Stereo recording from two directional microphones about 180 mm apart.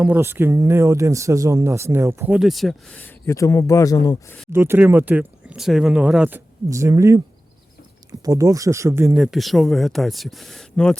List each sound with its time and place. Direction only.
0.0 s speech: 10° right (ahead or behind); by 4.4 s 20° left (ahead or behind)
4.5 s speech: 15° right (ahead or behind)
8.2 s speech: 20° right (ahead or behind)
9.1 s speech: centre (ahead or behind)